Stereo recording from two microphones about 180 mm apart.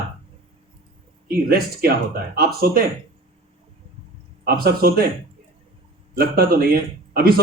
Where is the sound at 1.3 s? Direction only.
55° right (ahead or behind).